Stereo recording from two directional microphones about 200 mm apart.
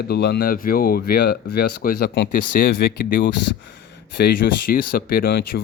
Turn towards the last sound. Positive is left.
turn(degrees=50)  # may be behind; listen again after turning